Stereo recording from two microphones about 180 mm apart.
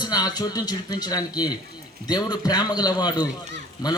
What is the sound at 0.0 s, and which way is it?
A man's voice, 20° left (ahead or behind).